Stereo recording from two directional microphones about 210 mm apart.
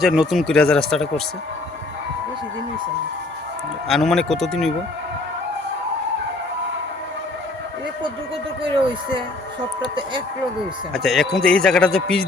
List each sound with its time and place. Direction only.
0.0 s speech: centre (ahead or behind)
3.8 s speech: centre (ahead or behind)
9.9 s speech: 25° right (ahead or behind)
10.9 s speech: centre (ahead or behind)